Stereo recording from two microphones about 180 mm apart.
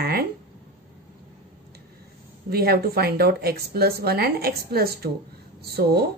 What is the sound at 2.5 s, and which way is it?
A woman's voice, 60° right (ahead or behind).